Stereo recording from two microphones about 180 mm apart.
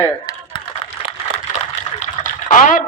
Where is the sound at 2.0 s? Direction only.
45° left (ahead or behind).